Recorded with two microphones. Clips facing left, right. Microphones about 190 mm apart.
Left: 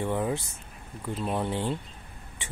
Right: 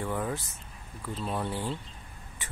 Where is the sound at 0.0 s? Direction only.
25° left (ahead or behind).